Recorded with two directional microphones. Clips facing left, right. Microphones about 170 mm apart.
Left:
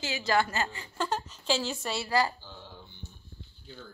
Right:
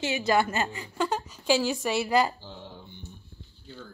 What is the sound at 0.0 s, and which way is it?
A woman's voice, 20° right (ahead or behind).